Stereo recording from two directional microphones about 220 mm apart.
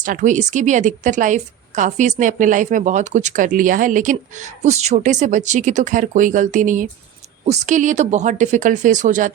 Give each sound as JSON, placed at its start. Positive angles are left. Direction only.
{"t": 0.0, "sound": "a woman's voice", "side_deg": -35}